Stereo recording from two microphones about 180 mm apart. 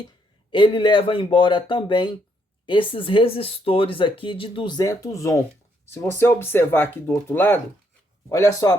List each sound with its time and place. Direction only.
0.5 s speech: 25° left (ahead or behind)